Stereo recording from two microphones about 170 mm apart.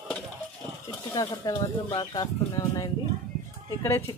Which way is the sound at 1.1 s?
25° left (ahead or behind).